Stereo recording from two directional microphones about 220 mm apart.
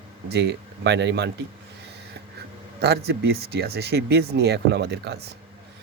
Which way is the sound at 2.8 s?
45° right (ahead or behind).